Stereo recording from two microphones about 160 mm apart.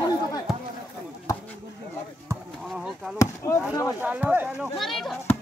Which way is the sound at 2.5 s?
Centre (ahead or behind).